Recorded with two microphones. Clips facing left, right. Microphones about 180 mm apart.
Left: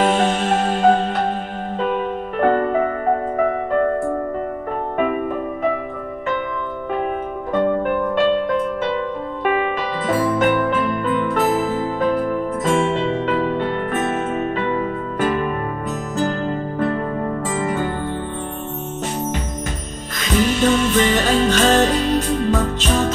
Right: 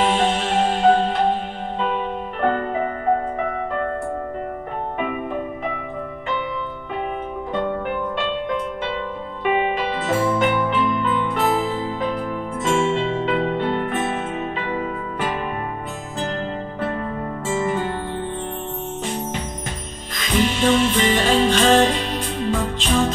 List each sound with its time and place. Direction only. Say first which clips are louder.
0.0 s music: left 2 dB; 45° left (ahead or behind)
2.4 s music: left 5 dB; 45° left (ahead or behind)
4.9 s music: left 7 dB; 45° left (ahead or behind)
7.5 s music: left 6 dB; 45° left (ahead or behind)
20.2 s music: left 2 dB; 45° left (ahead or behind)